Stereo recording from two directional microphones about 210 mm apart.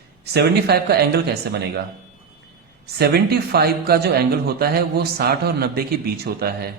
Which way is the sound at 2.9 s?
50° right (ahead or behind).